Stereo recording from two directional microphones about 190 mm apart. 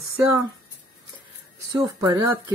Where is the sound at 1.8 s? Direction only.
20° right (ahead or behind).